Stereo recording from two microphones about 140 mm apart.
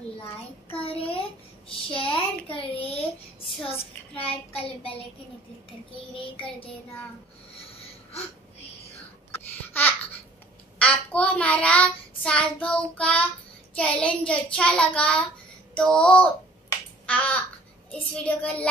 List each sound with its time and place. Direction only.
0.9 s speech: 40° left (ahead or behind)
6.3 s speech: 40° left (ahead or behind)
9.3 s babbling: 15° left (ahead or behind)
10.8 s child singing: 10° left (ahead or behind)
17.0 s a sound: 10° left (ahead or behind)
18.2 s child singing: 10° left (ahead or behind)